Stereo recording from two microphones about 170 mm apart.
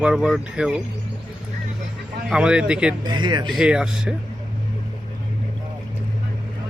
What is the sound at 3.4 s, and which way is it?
Speech, 5° right (ahead or behind).